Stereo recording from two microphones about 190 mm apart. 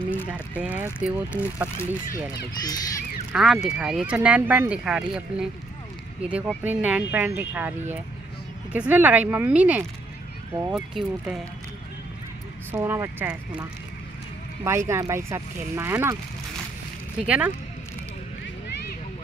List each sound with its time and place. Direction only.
0.3 s speech: 5° right (ahead or behind)
2.6 s speech: 20° left (ahead or behind)
3.3 s speech: centre (ahead or behind)
8.7 s speech: 10° right (ahead or behind)
12.7 s speech: 15° right (ahead or behind)
17.2 s speech: 5° right (ahead or behind)